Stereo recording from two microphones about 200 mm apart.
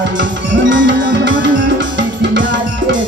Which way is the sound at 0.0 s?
65° right (ahead or behind).